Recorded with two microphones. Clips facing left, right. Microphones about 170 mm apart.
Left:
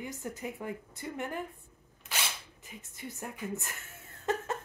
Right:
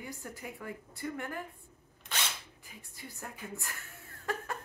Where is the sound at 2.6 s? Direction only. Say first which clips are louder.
Left 7 dB; 20° left (ahead or behind).